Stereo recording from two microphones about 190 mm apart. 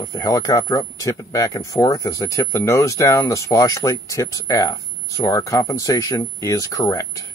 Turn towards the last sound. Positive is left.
turn(degrees=20)  # may be behind; listen again after turning